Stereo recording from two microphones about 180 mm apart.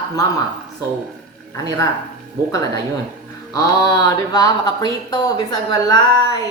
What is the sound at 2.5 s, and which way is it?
Speech, 20° left (ahead or behind).